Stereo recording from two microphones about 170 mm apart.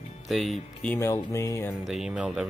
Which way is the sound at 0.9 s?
15° left (ahead or behind).